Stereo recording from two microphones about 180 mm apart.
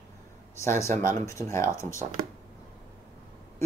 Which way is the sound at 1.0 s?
45° right (ahead or behind).